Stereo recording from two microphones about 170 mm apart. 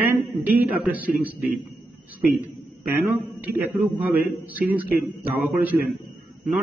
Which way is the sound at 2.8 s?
10° right (ahead or behind).